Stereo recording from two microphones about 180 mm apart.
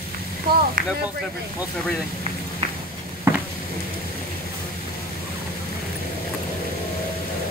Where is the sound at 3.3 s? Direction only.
15° right (ahead or behind).